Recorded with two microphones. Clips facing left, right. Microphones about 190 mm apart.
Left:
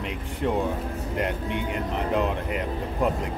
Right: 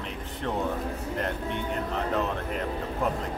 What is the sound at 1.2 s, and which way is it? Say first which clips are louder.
Speech: left 4 dB; 15° left (ahead or behind).